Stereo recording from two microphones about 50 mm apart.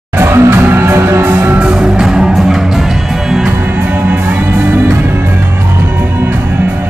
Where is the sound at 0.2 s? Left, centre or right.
Right.